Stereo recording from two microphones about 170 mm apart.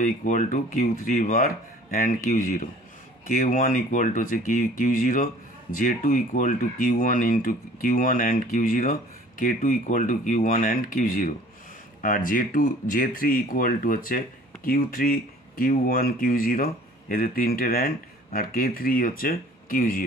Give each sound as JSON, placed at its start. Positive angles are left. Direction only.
{"t": 0.0, "sound": "speech", "side_deg": 50}